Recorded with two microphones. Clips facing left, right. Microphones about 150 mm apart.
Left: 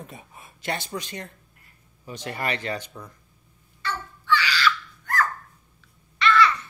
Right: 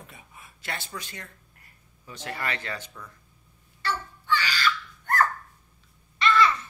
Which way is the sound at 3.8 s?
45° right (ahead or behind).